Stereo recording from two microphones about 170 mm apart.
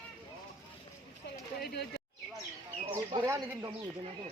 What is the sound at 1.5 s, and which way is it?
Speech, 65° left (ahead or behind).